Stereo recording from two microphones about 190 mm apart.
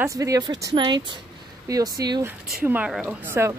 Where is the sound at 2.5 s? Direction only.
5° right (ahead or behind).